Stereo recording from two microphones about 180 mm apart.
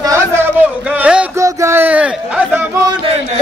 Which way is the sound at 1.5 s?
15° right (ahead or behind).